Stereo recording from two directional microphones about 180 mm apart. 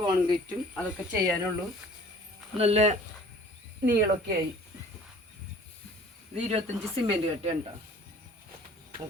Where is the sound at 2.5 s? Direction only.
35° right (ahead or behind).